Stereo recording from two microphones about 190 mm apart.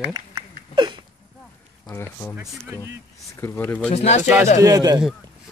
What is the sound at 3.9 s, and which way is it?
Speech, 35° left (ahead or behind).